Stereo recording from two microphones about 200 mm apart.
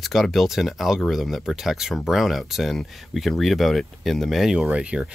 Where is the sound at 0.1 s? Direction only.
Centre (ahead or behind).